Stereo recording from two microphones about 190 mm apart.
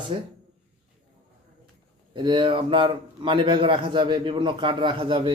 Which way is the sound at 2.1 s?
25° right (ahead or behind).